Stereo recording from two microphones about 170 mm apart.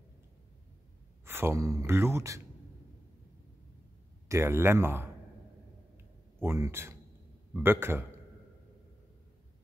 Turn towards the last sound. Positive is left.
turn(degrees=-15)  # may be behind; listen again after turning